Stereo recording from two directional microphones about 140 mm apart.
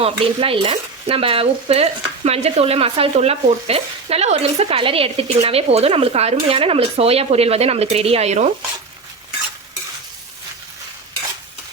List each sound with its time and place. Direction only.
0.0 s stir: 40° right (ahead or behind)